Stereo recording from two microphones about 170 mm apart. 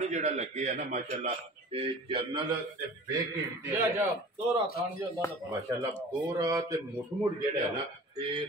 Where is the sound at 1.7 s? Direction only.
35° right (ahead or behind).